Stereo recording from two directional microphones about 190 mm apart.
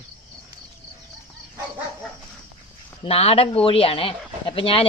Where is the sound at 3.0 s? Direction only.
30° left (ahead or behind).